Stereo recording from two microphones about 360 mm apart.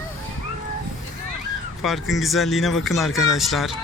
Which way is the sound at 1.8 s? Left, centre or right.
Centre.